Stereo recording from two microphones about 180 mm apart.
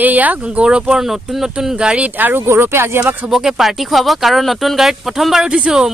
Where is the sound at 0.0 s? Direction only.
10° right (ahead or behind).